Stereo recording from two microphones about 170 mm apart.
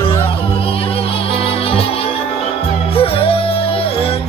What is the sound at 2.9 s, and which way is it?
Music, 35° left (ahead or behind).